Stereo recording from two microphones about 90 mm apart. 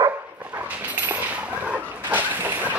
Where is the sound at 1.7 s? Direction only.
20° right (ahead or behind).